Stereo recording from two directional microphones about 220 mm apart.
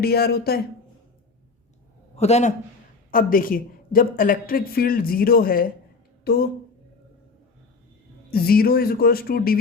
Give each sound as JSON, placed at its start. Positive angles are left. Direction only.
{"t": 0.0, "sound": "speech", "side_deg": 45}
{"t": 2.1, "sound": "a man's voice", "side_deg": 30}
{"t": 3.1, "sound": "speech", "side_deg": 40}
{"t": 8.3, "sound": "speech", "side_deg": 45}